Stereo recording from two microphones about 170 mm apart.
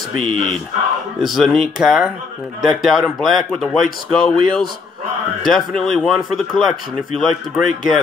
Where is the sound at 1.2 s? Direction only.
Centre (ahead or behind).